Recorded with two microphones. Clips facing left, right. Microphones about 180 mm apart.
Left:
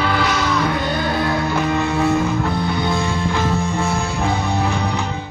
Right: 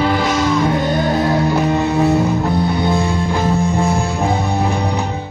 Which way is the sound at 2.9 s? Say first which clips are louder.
Right 3 dB; 35° right (ahead or behind).